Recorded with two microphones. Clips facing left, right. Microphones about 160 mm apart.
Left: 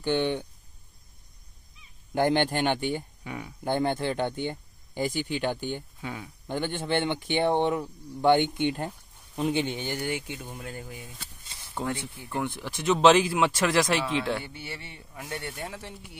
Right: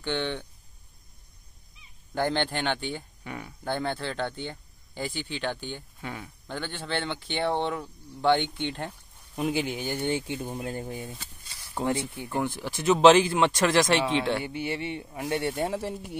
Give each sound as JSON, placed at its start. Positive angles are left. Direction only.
{"t": 0.0, "sound": "speech", "side_deg": 15}
{"t": 2.1, "sound": "speech", "side_deg": 15}
{"t": 10.3, "sound": "speech", "side_deg": -30}
{"t": 12.4, "sound": "speech", "side_deg": 0}
{"t": 14.4, "sound": "speech", "side_deg": -15}
{"t": 15.6, "sound": "speech", "side_deg": -40}